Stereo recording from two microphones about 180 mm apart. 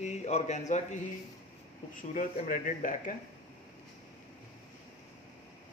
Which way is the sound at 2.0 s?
50° left (ahead or behind).